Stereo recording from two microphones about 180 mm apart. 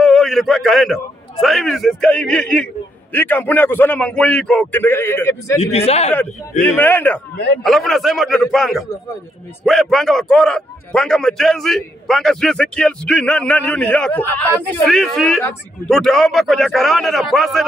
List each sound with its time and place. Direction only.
0.0 s a sound: centre (ahead or behind)
1.4 s a man's voice: centre (ahead or behind)
5.6 s a man's voice: 35° left (ahead or behind)
6.6 s a man's voice: 10° left (ahead or behind)